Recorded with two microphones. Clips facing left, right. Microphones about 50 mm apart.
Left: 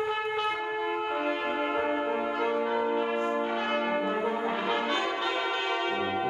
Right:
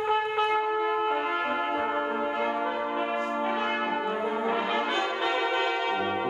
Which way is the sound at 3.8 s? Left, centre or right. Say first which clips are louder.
Even; centre.